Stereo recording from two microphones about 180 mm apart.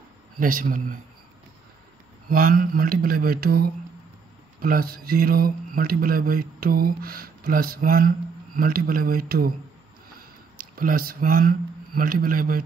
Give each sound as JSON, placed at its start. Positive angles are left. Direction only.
{"t": 0.4, "sound": "a man's voice", "side_deg": -50}
{"t": 2.2, "sound": "a man's voice", "side_deg": -50}
{"t": 10.8, "sound": "a man's voice", "side_deg": -50}